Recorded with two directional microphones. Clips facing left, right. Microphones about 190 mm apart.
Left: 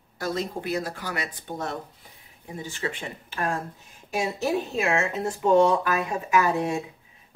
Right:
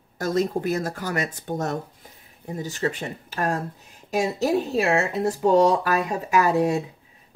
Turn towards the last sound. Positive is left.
turn(degrees=-35)  # may be behind; listen again after turning